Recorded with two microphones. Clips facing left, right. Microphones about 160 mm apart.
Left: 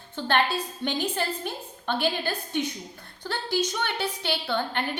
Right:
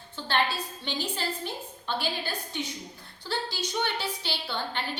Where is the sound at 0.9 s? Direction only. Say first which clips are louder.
Left 4 dB; 50° left (ahead or behind).